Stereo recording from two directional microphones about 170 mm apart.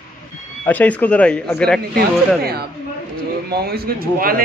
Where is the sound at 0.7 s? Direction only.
10° left (ahead or behind).